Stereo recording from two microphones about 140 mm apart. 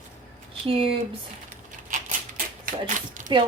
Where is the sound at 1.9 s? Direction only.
70° right (ahead or behind).